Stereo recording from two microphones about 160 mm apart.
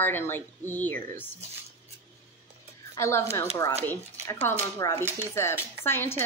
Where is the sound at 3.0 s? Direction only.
15° left (ahead or behind).